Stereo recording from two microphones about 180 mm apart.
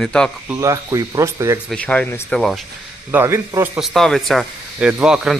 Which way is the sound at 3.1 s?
15° right (ahead or behind).